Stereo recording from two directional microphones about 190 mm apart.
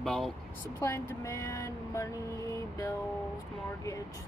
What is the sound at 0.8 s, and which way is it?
Speech, 15° left (ahead or behind).